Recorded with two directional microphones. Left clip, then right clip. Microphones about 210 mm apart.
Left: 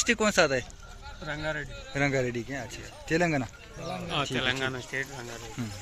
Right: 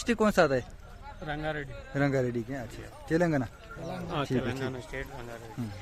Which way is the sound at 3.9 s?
35° right (ahead or behind).